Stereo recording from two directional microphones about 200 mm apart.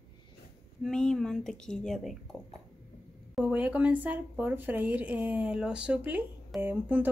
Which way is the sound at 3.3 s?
5° right (ahead or behind).